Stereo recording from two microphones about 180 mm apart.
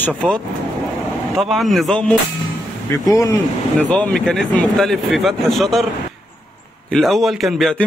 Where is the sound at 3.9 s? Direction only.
5° left (ahead or behind).